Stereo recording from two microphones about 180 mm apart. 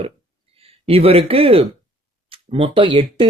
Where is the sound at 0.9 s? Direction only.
35° right (ahead or behind).